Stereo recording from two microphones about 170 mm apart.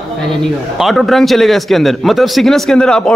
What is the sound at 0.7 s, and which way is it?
Speech, centre (ahead or behind).